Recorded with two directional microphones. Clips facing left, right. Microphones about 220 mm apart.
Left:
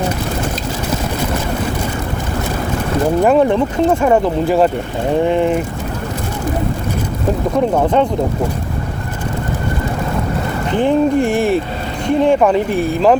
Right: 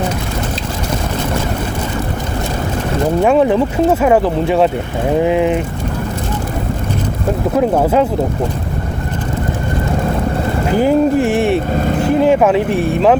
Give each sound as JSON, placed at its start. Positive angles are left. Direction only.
{"t": 3.2, "sound": "speech", "side_deg": 0}
{"t": 10.7, "sound": "speech", "side_deg": -5}
{"t": 11.7, "sound": "speech", "side_deg": -50}
{"t": 12.0, "sound": "speech", "side_deg": -5}